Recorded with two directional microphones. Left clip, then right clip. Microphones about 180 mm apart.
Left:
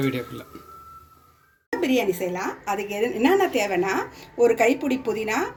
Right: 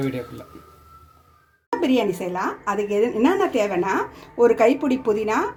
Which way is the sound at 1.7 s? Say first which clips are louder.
Right 2 dB; 50° right (ahead or behind).